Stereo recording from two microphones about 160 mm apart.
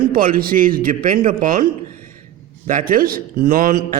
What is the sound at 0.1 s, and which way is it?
A man's voice, 60° right (ahead or behind).